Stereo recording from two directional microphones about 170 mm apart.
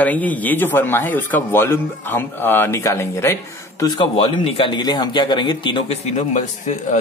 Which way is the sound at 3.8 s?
25° left (ahead or behind).